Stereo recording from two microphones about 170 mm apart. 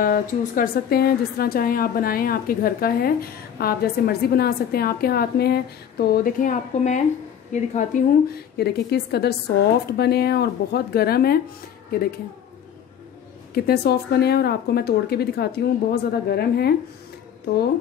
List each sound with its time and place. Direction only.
0.0 s a woman's voice: 55° left (ahead or behind)
8.5 s speech: 70° left (ahead or behind)
13.6 s speech: 70° left (ahead or behind)